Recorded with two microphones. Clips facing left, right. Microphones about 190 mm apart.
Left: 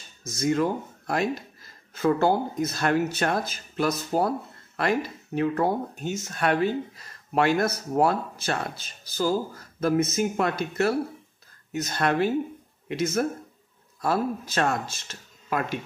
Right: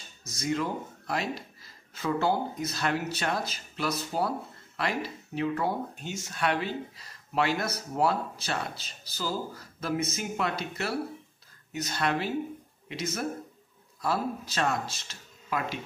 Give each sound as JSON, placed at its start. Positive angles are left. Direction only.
{"t": 0.3, "sound": "speech", "side_deg": 50}